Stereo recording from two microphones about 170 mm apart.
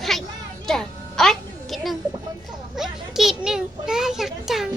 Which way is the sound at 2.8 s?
Centre (ahead or behind).